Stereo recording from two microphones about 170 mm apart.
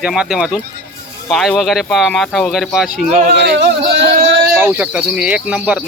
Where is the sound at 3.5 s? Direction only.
90° right.